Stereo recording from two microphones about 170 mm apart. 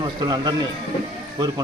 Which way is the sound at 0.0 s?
25° right (ahead or behind).